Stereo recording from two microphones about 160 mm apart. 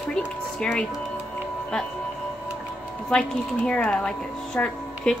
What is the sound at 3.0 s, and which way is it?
Speech, 5° left (ahead or behind).